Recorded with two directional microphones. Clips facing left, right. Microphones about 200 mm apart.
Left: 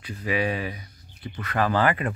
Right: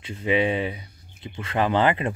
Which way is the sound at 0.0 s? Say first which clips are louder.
Right 4 dB; 25° right (ahead or behind).